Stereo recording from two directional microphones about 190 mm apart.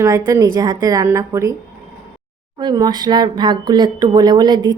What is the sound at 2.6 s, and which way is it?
Speech, 20° right (ahead or behind).